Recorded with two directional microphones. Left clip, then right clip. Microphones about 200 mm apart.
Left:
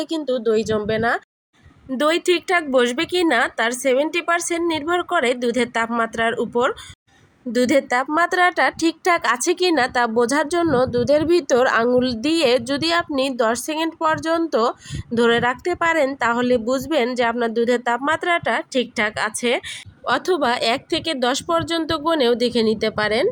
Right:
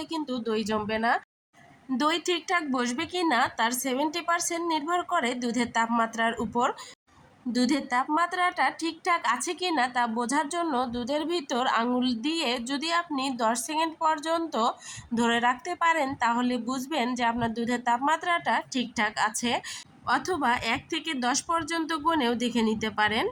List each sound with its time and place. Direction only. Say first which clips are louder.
0.0 s a woman's voice: left 11 dB; 25° left (ahead or behind)